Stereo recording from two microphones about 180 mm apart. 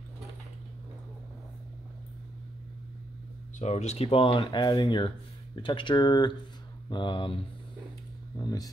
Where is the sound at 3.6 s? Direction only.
40° left (ahead or behind).